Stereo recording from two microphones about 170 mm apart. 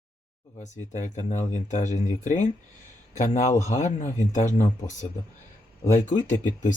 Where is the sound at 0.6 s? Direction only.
45° left (ahead or behind).